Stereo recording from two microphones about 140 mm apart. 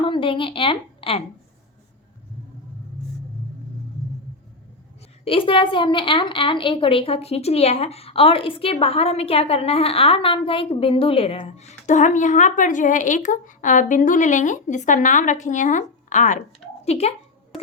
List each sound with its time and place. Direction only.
0.0 s a woman's voice: 40° left (ahead or behind)
5.2 s a woman's voice: 40° left (ahead or behind); by 16.4 s 60° left (ahead or behind)
16.8 s a woman's voice: 50° left (ahead or behind)